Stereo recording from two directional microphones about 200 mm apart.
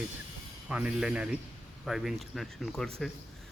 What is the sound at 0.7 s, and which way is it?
A man's voice, 5° right (ahead or behind).